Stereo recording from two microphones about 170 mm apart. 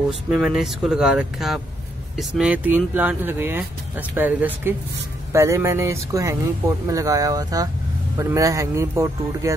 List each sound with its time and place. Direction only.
0.3 s speech: centre (ahead or behind); by 9.5 s 15° right (ahead or behind)